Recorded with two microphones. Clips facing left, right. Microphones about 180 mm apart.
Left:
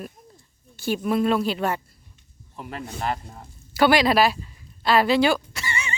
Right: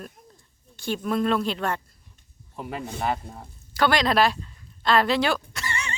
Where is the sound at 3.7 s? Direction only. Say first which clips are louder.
Left 3 dB; 10° left (ahead or behind).